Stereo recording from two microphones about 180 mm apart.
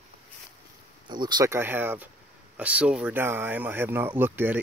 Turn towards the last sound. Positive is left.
turn(degrees=-10)  # may be behind; listen again after turning